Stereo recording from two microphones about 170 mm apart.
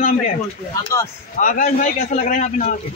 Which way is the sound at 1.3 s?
50° left (ahead or behind).